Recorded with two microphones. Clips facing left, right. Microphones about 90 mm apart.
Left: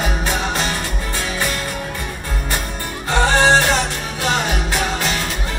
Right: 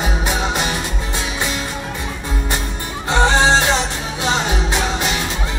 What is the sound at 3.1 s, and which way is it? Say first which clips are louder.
Music: even; 20° right (ahead or behind).